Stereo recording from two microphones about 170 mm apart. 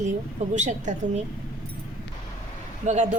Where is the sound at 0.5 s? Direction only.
45° right (ahead or behind).